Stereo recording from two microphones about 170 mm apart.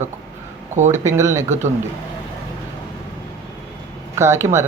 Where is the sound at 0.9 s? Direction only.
15° right (ahead or behind).